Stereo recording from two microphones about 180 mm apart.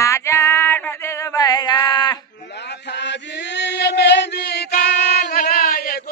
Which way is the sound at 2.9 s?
75° left (ahead or behind).